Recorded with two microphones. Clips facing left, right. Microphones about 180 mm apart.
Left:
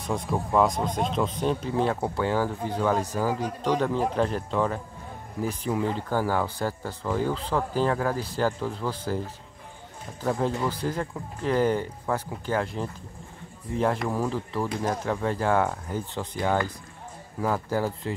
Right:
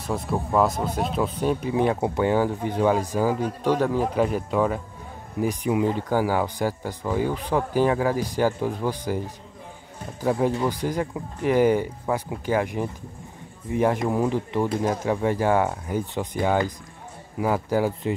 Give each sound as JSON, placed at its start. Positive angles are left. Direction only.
{"t": 0.0, "sound": "speech", "side_deg": -5}
{"t": 10.2, "sound": "speech", "side_deg": -15}